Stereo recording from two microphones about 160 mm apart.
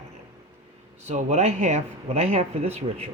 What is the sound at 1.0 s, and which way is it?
Speech, 45° right (ahead or behind).